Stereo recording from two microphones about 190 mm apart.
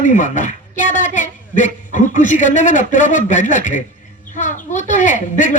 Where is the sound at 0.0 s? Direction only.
40° left (ahead or behind).